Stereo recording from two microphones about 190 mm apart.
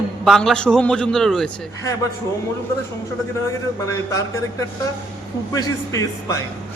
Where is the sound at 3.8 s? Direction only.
15° left (ahead or behind).